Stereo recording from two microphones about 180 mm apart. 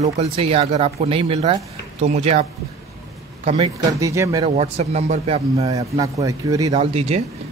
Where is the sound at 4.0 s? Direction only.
15° right (ahead or behind).